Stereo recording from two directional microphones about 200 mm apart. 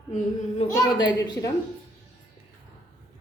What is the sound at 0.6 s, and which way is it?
Speech, 20° left (ahead or behind).